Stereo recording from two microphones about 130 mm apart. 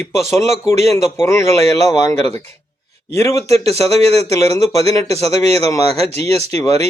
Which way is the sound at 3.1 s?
25° left (ahead or behind).